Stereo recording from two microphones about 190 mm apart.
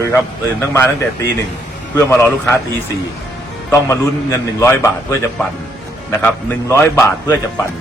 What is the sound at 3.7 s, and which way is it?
A man's voice, 15° left (ahead or behind).